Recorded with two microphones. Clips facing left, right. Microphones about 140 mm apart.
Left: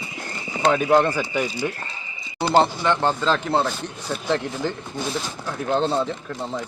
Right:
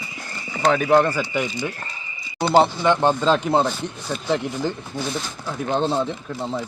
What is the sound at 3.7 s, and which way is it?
Speech, 5° right (ahead or behind).